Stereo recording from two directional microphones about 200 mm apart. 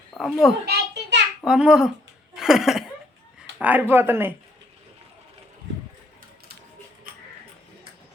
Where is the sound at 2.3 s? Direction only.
Centre (ahead or behind).